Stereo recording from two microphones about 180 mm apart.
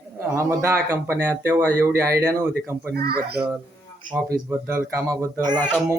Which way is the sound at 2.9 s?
60° right (ahead or behind).